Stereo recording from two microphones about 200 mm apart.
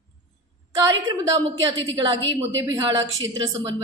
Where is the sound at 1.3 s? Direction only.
15° right (ahead or behind).